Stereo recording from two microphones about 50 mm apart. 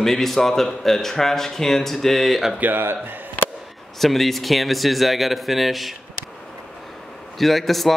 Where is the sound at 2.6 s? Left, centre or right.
Right.